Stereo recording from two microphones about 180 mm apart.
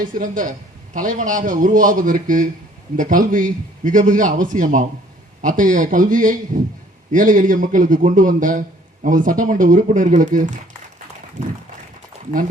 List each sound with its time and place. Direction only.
0.0 s a man's voice: 45° right (ahead or behind)